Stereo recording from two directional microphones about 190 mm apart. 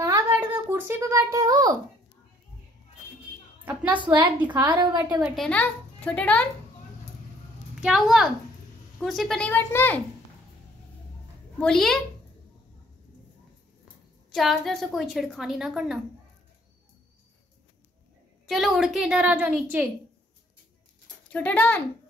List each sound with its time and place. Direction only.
0.0 s a sound: 15° right (ahead or behind)
4.0 s a woman's voice: 25° right (ahead or behind)
4.4 s a woman's voice: 10° right (ahead or behind)
4.7 s a woman's voice: 20° right (ahead or behind)
5.2 s a woman's voice: centre (ahead or behind)
7.8 s a woman's voice: centre (ahead or behind)
11.5 s a woman's voice: 5° left (ahead or behind)
14.3 s a woman's voice: centre (ahead or behind)
18.5 s a woman's voice: centre (ahead or behind)
21.3 s a woman's voice: 10° left (ahead or behind)